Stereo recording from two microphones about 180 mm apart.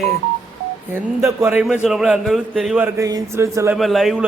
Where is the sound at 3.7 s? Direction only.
Centre (ahead or behind).